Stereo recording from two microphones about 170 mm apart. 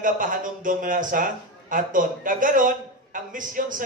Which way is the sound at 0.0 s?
50° right (ahead or behind).